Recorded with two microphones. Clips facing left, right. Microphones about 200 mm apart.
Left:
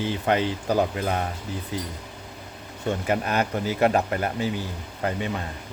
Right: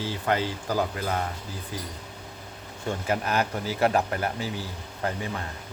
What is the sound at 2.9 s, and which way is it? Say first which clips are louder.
Speech: left 3 dB; 20° left (ahead or behind).